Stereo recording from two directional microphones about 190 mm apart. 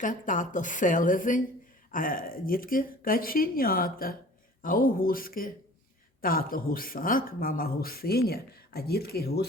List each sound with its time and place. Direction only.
0.0 s speech: 45° left (ahead or behind)